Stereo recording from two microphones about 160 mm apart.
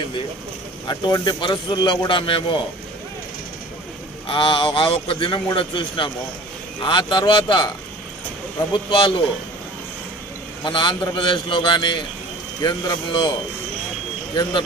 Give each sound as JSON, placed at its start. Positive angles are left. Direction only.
{"t": 0.8, "sound": "speech", "side_deg": 25}
{"t": 4.3, "sound": "a man's voice", "side_deg": 35}
{"t": 8.7, "sound": "a man's voice", "side_deg": 30}
{"t": 10.6, "sound": "speech", "side_deg": 30}